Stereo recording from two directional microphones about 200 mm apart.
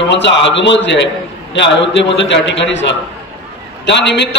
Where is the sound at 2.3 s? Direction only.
65° left (ahead or behind).